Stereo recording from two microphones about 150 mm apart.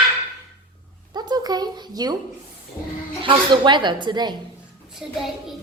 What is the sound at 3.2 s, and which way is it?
A woman's voice, 30° right (ahead or behind).